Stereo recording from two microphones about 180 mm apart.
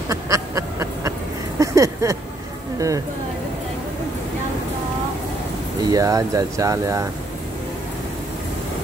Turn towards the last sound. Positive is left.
turn(degrees=-20)  # may be behind; listen again after turning